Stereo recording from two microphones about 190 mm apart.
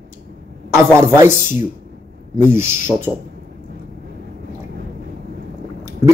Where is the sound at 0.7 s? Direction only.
15° right (ahead or behind).